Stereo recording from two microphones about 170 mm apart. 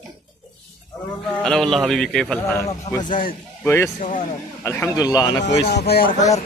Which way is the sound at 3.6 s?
15° left (ahead or behind).